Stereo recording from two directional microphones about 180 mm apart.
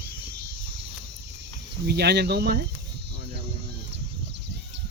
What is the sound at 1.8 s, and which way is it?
Speech, 65° right (ahead or behind).